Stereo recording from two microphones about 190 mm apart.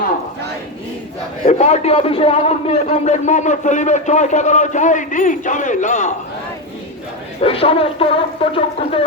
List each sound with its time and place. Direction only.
1.5 s a man's voice: 35° left (ahead or behind)
7.4 s speech: 30° left (ahead or behind)